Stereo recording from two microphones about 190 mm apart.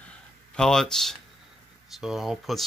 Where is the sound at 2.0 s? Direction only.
Centre (ahead or behind).